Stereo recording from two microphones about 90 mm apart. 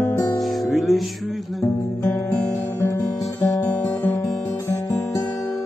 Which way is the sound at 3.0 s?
40° left (ahead or behind).